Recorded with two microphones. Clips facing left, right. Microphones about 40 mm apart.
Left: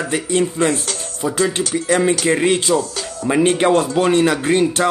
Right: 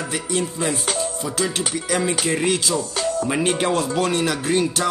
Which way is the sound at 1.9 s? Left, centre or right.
Left.